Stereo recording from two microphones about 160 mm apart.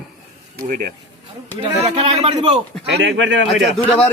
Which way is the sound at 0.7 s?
65° right (ahead or behind).